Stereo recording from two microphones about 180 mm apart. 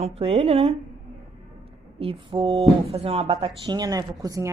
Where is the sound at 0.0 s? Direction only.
35° right (ahead or behind).